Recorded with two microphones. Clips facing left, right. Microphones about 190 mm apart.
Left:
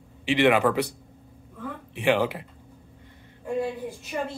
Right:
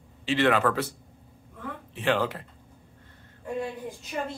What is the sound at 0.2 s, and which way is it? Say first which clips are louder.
Speech: left 3 dB; 15° left (ahead or behind).